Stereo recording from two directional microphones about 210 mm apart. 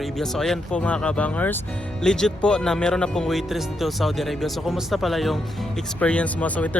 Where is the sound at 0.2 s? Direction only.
Centre (ahead or behind).